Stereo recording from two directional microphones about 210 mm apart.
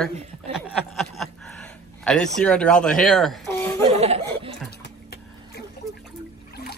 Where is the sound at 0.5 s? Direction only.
Centre (ahead or behind).